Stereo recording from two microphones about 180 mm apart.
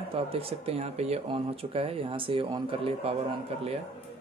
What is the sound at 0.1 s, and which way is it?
Speech, 30° right (ahead or behind).